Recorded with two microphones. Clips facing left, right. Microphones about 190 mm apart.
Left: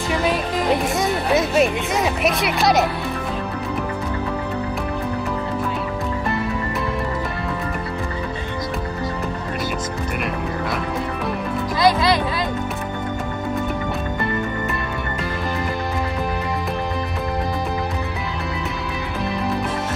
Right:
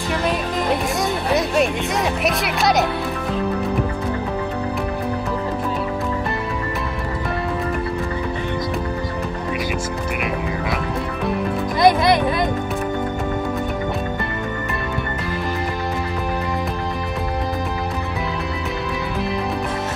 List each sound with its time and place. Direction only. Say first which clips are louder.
0.1 s music: left 1 dB; centre (ahead or behind)
2.2 s speech: left 2 dB; centre (ahead or behind)
11.8 s music: right 3 dB; 20° right (ahead or behind)